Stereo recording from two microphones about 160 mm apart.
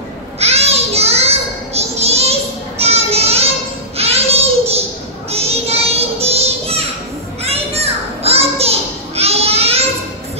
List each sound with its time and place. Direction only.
0.4 s child singing: 40° right (ahead or behind)
2.8 s children playing: 40° right (ahead or behind)
3.9 s child singing: 40° right (ahead or behind)
7.4 s children playing: 40° right (ahead or behind)